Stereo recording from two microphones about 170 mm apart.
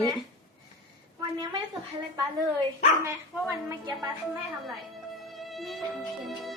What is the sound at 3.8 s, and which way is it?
Speech, 25° right (ahead or behind).